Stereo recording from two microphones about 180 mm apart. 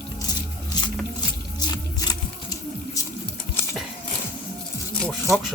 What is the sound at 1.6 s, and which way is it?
Music, 20° left (ahead or behind).